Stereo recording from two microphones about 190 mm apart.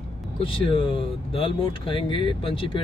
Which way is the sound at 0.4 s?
30° left (ahead or behind).